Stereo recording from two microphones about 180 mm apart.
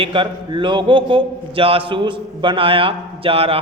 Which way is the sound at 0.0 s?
30° right (ahead or behind).